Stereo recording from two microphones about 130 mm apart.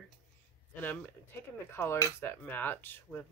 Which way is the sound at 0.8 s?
15° left (ahead or behind).